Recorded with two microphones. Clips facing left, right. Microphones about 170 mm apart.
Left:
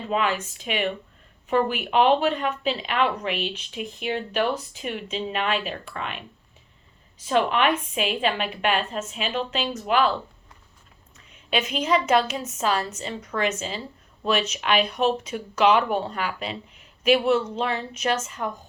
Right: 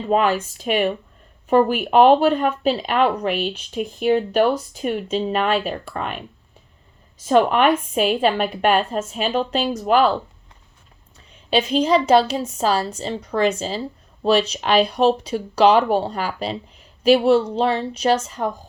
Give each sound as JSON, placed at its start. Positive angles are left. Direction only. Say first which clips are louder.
{"t": 0.1, "sound": "a woman's voice", "louder": "right 7 dB", "side_deg": -45}
{"t": 11.3, "sound": "a woman's voice", "louder": "right 7 dB", "side_deg": -30}